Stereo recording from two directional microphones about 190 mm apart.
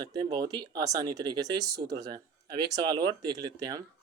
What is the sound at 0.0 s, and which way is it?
Speech, 20° right (ahead or behind).